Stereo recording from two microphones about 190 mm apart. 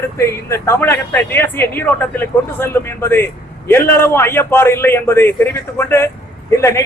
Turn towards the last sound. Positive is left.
turn(degrees=15)  # may be behind; listen again after turning